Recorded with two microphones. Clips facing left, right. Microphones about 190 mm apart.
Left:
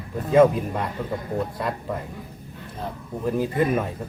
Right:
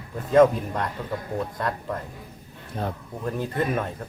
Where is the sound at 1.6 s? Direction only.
5° left (ahead or behind).